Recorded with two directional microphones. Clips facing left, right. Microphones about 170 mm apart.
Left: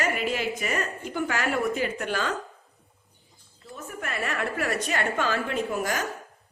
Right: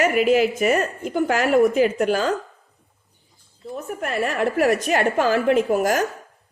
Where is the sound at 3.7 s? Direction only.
35° right (ahead or behind).